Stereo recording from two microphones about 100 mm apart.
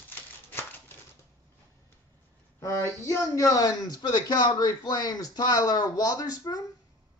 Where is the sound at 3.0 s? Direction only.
30° left (ahead or behind).